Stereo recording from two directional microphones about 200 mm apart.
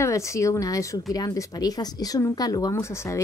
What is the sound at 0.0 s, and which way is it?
Speech, 15° left (ahead or behind).